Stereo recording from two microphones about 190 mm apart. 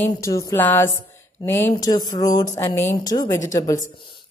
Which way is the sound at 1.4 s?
10° left (ahead or behind).